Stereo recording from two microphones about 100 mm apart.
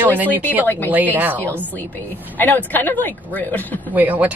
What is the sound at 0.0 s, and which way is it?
Speech, 20° right (ahead or behind).